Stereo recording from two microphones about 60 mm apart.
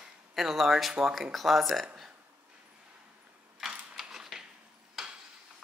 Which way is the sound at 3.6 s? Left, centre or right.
Centre.